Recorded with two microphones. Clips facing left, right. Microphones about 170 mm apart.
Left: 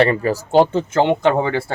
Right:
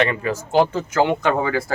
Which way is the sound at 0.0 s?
35° left (ahead or behind).